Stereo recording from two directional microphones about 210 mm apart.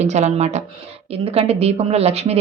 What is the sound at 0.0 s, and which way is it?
Speech, 30° right (ahead or behind).